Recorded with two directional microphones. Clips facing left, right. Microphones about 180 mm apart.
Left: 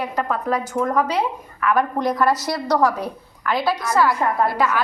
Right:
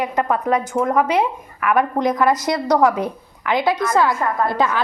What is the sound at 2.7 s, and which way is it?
A woman's voice, 20° right (ahead or behind).